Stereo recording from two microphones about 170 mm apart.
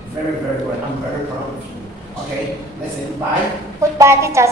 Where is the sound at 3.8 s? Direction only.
15° right (ahead or behind).